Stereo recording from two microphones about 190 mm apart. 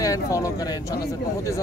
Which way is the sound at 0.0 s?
20° left (ahead or behind).